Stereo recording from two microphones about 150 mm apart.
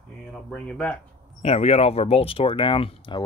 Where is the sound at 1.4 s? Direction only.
45° left (ahead or behind).